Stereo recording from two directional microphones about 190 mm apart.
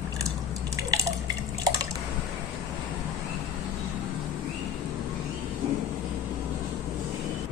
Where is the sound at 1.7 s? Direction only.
20° right (ahead or behind).